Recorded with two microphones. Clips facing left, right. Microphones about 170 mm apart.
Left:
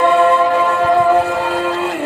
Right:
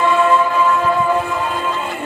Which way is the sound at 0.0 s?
60° left (ahead or behind).